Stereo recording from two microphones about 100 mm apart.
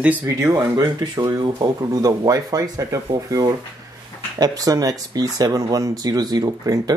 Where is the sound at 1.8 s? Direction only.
40° right (ahead or behind).